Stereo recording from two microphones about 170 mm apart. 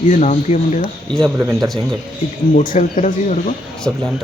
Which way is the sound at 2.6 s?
45° left (ahead or behind).